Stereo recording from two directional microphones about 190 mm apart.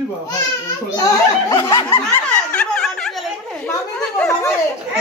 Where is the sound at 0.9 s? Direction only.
20° left (ahead or behind).